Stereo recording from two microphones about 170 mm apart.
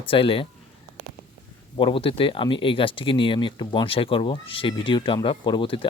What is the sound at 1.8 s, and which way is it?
Speech, 30° left (ahead or behind).